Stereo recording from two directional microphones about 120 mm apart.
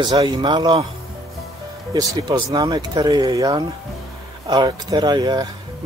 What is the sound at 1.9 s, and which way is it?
Speech, 35° right (ahead or behind).